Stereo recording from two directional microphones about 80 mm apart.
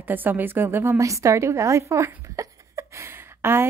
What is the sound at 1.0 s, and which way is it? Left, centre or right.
A woman's voice, right.